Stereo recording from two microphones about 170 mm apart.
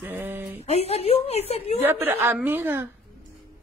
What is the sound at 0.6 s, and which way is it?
A woman's voice, 40° left (ahead or behind).